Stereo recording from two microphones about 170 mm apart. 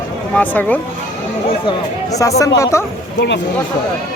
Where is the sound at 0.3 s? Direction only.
10° left (ahead or behind).